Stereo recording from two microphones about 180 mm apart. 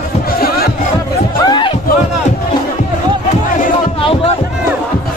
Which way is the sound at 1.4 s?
25° left (ahead or behind).